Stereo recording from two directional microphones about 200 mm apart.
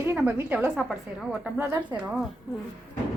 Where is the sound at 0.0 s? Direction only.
10° right (ahead or behind).